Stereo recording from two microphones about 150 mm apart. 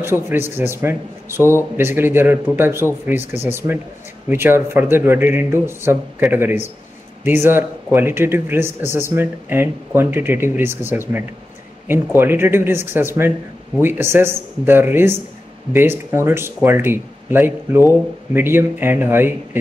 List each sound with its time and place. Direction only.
0.0 s a man's voice: 15° right (ahead or behind)
4.3 s a man's voice: 15° right (ahead or behind)